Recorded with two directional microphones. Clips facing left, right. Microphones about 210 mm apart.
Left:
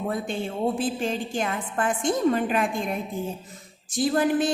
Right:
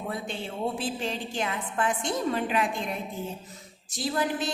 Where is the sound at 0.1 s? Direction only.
50° left (ahead or behind).